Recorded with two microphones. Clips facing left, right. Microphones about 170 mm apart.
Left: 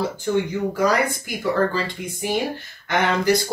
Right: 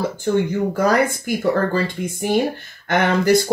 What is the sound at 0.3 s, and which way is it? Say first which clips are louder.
Speech: right 4 dB; 55° right (ahead or behind).